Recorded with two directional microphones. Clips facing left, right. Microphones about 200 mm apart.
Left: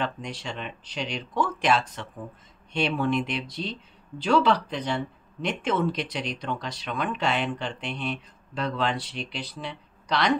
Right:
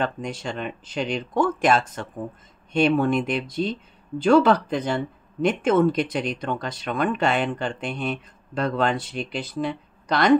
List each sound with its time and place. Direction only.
0.0 s speech: 50° right (ahead or behind)